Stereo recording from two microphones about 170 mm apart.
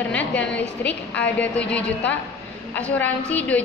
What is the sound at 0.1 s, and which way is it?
A woman's voice, 10° left (ahead or behind).